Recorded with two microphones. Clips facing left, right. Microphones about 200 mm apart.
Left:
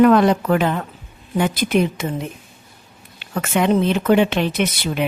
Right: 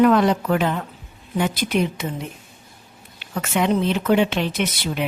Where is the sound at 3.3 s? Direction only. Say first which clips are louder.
Left 3 dB; 55° left (ahead or behind).